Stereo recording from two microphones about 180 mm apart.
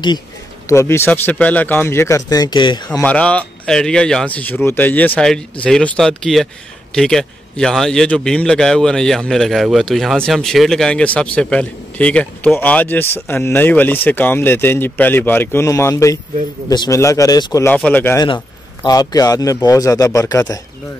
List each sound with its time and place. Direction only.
0.7 s speech: 15° left (ahead or behind)
3.0 s speech: 5° left (ahead or behind)
18.9 s speech: 20° left (ahead or behind)